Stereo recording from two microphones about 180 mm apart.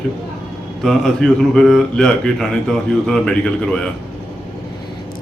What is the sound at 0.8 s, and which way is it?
Speech, centre (ahead or behind).